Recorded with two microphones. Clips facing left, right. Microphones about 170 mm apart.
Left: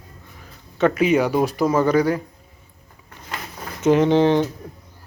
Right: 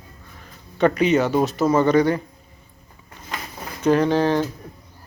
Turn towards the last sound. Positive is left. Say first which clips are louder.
# left 3 dB
turn(degrees=20)  # may be behind; listen again after turning